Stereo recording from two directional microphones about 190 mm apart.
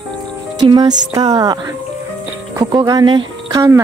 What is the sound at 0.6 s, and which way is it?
Music, 20° right (ahead or behind).